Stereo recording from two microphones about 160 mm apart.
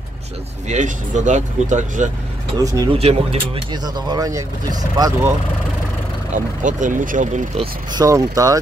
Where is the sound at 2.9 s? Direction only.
40° right (ahead or behind).